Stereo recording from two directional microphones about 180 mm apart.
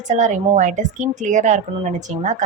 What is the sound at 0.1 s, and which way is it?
A woman's voice, 45° right (ahead or behind).